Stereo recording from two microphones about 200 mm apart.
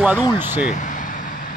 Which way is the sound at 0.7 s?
40° left (ahead or behind).